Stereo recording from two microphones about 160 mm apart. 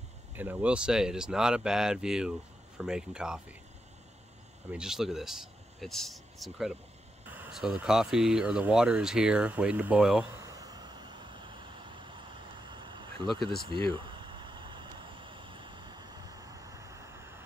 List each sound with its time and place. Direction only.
0.4 s speech: 10° right (ahead or behind)
4.6 s speech: 5° right (ahead or behind)
10.3 s vehicle: 20° right (ahead or behind)
13.7 s a sound: 30° right (ahead or behind)